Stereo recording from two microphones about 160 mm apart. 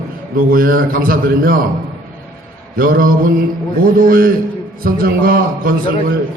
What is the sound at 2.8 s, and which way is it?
A man's voice, 65° right (ahead or behind).